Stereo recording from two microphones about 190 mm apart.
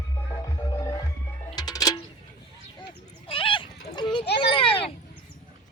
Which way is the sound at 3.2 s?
30° left (ahead or behind).